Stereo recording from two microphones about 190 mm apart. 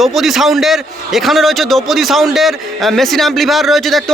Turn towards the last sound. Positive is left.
turn(degrees=0)  # may be behind; listen again after turning